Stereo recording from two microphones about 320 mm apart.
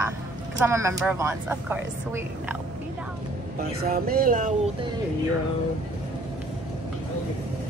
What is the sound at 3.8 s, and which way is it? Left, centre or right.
Speech, right.